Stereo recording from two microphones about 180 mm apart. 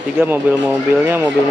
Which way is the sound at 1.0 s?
10° right (ahead or behind).